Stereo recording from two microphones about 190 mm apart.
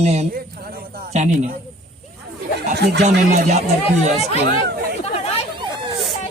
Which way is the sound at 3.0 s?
35° right (ahead or behind).